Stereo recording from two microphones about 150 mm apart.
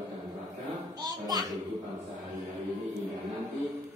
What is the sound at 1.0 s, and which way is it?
Music, 25° right (ahead or behind).